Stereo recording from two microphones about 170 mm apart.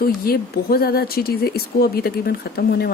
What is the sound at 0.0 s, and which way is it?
Speech, 65° left (ahead or behind).